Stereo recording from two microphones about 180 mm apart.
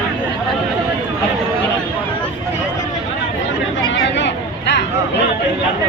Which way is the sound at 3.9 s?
80° left.